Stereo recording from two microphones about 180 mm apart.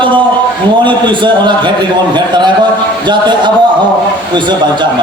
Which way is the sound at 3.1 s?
25° right (ahead or behind).